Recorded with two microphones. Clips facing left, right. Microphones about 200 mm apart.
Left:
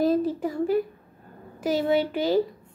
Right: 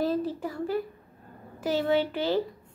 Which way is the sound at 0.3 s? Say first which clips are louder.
Left 6 dB; 15° left (ahead or behind).